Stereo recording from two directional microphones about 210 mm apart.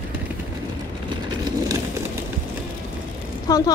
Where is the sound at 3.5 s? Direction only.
15° left (ahead or behind).